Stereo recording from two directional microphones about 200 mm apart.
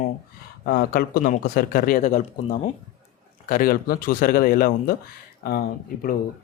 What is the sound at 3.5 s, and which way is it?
Speech, 45° left (ahead or behind).